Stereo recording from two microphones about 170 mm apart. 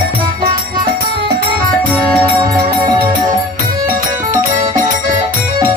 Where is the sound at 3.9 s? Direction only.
55° right (ahead or behind).